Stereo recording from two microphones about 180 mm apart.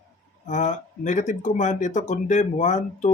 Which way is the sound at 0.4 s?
40° left (ahead or behind).